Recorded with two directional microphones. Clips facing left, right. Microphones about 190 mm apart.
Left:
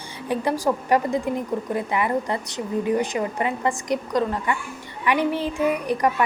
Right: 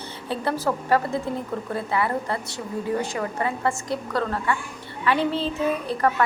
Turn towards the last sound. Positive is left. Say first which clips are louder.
# left 1 dB
turn(degrees=15)  # may be behind; listen again after turning